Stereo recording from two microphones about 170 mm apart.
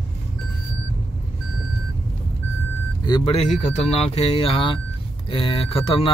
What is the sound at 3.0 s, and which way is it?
Speech, 30° left (ahead or behind).